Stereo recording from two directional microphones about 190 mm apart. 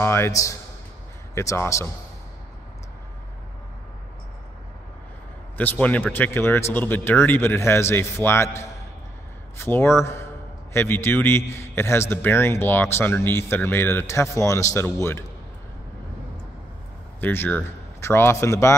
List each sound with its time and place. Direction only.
0.0 s a man's voice: 15° left (ahead or behind)
5.6 s a man's voice: 10° left (ahead or behind)
17.2 s a man's voice: 10° left (ahead or behind)